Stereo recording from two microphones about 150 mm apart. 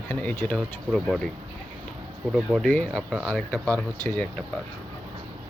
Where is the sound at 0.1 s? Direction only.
15° left (ahead or behind).